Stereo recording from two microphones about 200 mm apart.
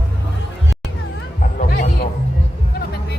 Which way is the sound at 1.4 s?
45° left (ahead or behind).